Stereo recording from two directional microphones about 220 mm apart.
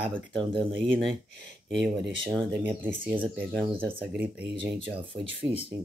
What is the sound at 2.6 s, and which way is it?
Speech, 10° right (ahead or behind).